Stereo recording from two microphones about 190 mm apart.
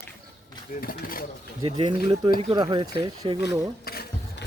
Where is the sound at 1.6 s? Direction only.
25° right (ahead or behind).